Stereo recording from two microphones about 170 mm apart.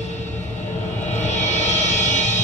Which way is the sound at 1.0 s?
40° left (ahead or behind).